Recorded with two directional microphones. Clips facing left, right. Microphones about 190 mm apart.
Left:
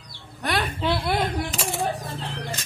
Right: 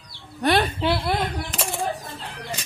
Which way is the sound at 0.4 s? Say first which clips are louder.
Right 6 dB; 30° right (ahead or behind).